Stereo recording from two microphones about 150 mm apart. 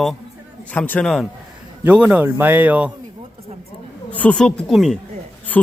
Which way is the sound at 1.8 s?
10° right (ahead or behind).